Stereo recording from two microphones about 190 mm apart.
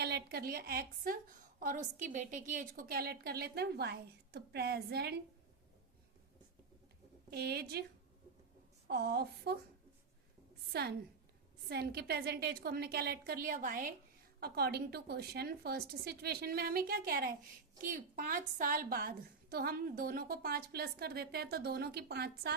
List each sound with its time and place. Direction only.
0.0 s a woman's voice: 55° right (ahead or behind)
7.3 s a woman's voice: 60° right (ahead or behind)
8.9 s a woman's voice: 55° right (ahead or behind)
10.7 s a woman's voice: 55° right (ahead or behind)